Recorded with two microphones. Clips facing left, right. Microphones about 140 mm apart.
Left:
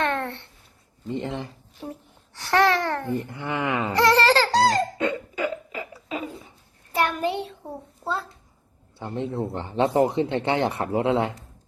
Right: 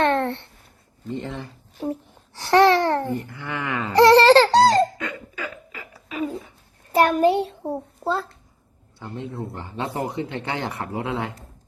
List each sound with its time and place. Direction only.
0.0 s a sound: 35° right (ahead or behind)
1.0 s speech: 20° left (ahead or behind)
1.9 s a child's voice: 30° right (ahead or behind)
3.2 s speech: 20° left (ahead or behind)
3.9 s baby laughter: 30° right (ahead or behind)
4.9 s burping: 25° left (ahead or behind)
6.9 s a child's voice: 40° right (ahead or behind)
9.0 s speech: 25° left (ahead or behind)